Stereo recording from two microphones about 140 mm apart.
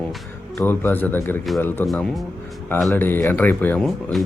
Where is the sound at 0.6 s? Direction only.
15° left (ahead or behind).